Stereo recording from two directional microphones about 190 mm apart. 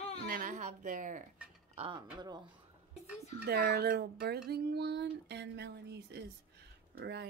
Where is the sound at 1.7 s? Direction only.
30° right (ahead or behind).